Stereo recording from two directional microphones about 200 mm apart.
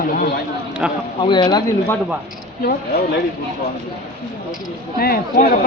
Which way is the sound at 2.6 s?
50° left (ahead or behind).